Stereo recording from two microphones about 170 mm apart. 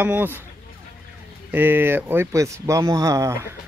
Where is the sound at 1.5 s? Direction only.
10° right (ahead or behind).